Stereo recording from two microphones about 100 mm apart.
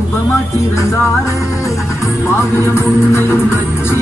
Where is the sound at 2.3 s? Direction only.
30° left (ahead or behind).